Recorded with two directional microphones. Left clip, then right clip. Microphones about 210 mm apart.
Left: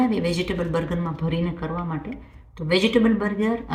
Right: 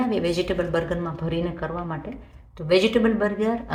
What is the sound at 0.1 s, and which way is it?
Speech, 25° right (ahead or behind).